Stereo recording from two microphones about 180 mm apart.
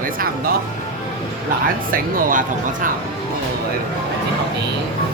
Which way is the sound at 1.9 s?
50° right (ahead or behind).